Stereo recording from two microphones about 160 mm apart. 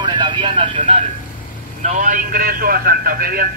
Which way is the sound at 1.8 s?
50° right (ahead or behind).